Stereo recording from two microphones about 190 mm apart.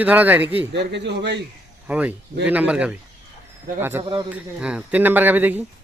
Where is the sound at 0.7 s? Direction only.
65° right (ahead or behind).